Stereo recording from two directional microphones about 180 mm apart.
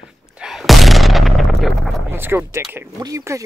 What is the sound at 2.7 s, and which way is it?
Speech, 15° right (ahead or behind).